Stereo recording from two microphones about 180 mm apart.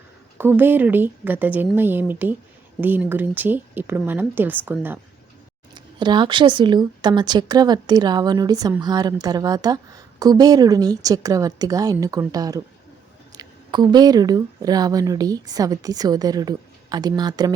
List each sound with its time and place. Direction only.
0.3 s speech: 10° right (ahead or behind)
5.7 s speech: 25° right (ahead or behind)